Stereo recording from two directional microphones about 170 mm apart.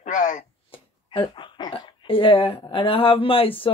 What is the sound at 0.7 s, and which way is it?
Speech, 30° left (ahead or behind).